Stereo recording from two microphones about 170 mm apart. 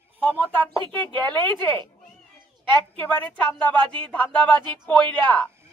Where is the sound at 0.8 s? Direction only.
30° right (ahead or behind).